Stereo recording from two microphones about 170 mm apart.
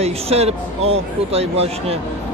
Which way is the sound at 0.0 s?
40° right (ahead or behind).